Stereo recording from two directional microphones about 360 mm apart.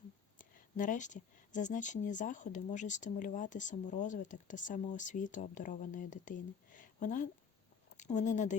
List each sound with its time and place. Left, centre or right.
0.3 s speech: left